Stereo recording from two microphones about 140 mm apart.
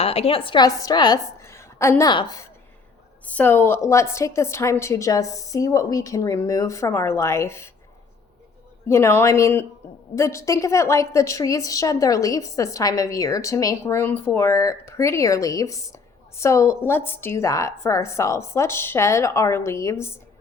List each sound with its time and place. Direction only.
0.0 s a woman's voice: 45° left (ahead or behind)
1.4 s a sound: 20° left (ahead or behind)
2.0 s a woman's voice: 30° left (ahead or behind)
3.2 s a woman's voice: 15° left (ahead or behind)
8.9 s a woman's voice: 20° left (ahead or behind)